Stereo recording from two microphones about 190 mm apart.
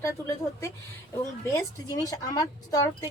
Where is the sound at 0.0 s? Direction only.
15° left (ahead or behind).